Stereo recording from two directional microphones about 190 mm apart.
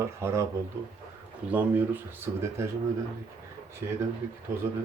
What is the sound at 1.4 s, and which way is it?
Speech, 10° right (ahead or behind).